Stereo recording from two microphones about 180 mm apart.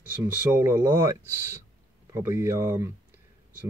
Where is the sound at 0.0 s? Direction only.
10° right (ahead or behind).